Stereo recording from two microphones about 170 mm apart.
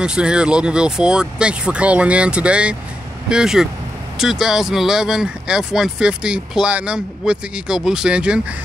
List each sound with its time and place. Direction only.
0.0 s speech: 5° right (ahead or behind)